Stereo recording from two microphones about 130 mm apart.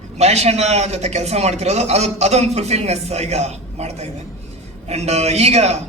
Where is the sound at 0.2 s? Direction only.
55° right (ahead or behind).